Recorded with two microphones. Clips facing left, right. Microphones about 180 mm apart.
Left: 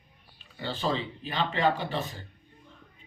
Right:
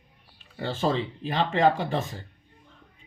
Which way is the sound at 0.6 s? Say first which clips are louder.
Right 4 dB; 50° right (ahead or behind).